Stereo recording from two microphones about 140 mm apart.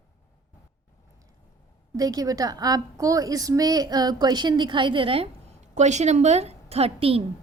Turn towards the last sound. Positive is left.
turn(degrees=-45)  # may be behind; listen again after turning